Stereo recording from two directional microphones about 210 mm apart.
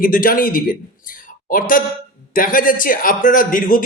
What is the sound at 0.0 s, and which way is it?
A man's voice, 40° left (ahead or behind).